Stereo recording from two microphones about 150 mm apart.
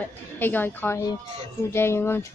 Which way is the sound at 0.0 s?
15° left (ahead or behind).